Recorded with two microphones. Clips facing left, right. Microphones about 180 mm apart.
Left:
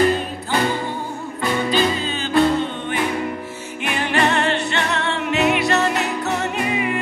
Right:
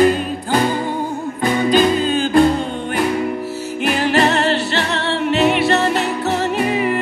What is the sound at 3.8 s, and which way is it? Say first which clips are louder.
Music: right 4 dB; 35° right (ahead or behind).